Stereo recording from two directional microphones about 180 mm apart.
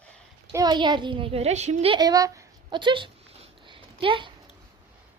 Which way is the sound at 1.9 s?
20° right (ahead or behind).